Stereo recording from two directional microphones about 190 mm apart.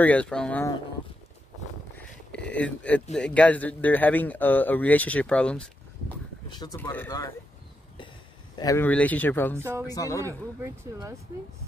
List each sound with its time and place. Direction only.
0.0 s speech: 5° left (ahead or behind)
2.0 s speech: 5° left (ahead or behind)
6.5 s speech: 20° left (ahead or behind)
6.8 s speech: 10° left (ahead or behind)
8.5 s speech: 15° left (ahead or behind)
9.6 s speech: 15° right (ahead or behind)
9.8 s speech: 15° left (ahead or behind)
10.6 s speech: 15° right (ahead or behind)